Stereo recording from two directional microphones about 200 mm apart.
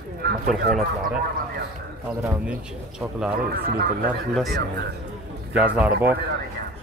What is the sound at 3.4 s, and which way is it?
Speech, 50° right (ahead or behind).